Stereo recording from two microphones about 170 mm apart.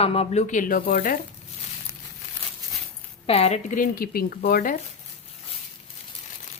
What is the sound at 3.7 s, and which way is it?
Speech, 55° left (ahead or behind).